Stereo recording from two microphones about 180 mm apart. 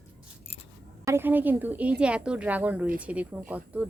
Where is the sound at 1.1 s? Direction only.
10° right (ahead or behind).